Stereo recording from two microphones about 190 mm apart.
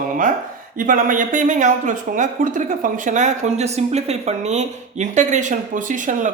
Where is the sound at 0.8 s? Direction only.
45° right (ahead or behind).